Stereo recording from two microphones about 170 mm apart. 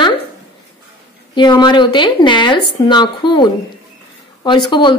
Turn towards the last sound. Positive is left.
turn(degrees=30)  # may be behind; listen again after turning